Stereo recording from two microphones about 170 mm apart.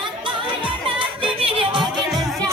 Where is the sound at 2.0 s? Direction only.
Centre (ahead or behind).